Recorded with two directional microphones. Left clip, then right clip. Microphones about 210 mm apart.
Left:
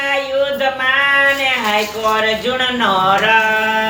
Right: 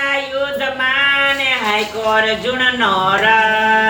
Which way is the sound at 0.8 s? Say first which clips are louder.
Left 1 dB; 15° left (ahead or behind).